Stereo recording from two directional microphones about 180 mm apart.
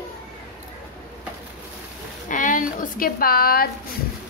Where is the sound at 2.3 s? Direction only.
45° left (ahead or behind).